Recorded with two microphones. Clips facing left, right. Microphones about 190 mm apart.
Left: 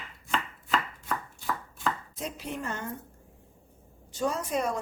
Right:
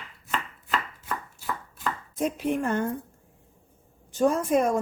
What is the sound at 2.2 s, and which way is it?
Speech, 55° right (ahead or behind).